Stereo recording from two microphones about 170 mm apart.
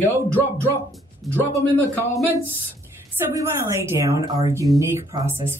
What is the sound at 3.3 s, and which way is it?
A woman's voice, 15° right (ahead or behind).